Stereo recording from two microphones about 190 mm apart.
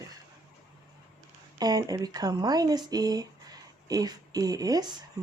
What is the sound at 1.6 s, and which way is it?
Speech, 20° right (ahead or behind).